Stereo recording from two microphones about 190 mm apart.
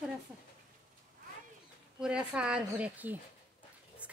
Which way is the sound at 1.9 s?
5° right (ahead or behind).